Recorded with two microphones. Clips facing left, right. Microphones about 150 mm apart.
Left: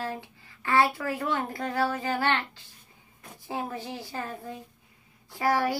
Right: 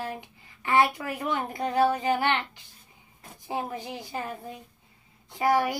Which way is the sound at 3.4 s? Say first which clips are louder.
Right 1 dB; 20° right (ahead or behind).